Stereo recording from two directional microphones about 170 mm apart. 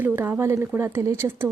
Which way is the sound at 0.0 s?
10° right (ahead or behind).